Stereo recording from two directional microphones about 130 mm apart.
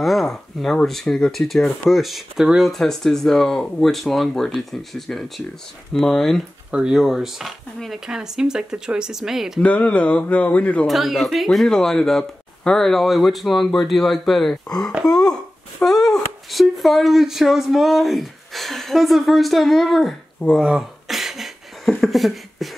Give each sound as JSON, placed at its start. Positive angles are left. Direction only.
{"t": 0.0, "sound": "speech", "side_deg": 0}
{"t": 9.6, "sound": "speech", "side_deg": 10}
{"t": 10.9, "sound": "speech", "side_deg": 0}
{"t": 15.0, "sound": "throat clearing", "side_deg": -10}
{"t": 15.8, "sound": "a sound", "side_deg": 5}
{"t": 16.4, "sound": "speech", "side_deg": 0}
{"t": 20.5, "sound": "a sound", "side_deg": -5}